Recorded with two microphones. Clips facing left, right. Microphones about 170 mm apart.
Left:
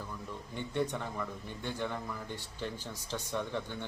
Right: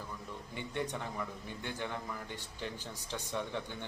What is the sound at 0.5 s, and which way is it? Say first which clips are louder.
Speech: left 4 dB; 10° right (ahead or behind).